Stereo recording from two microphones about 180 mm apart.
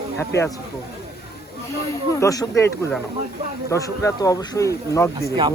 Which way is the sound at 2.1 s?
20° left (ahead or behind).